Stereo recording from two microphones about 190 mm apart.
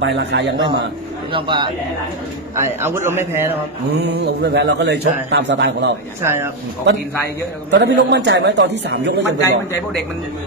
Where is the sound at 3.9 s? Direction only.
60° right (ahead or behind).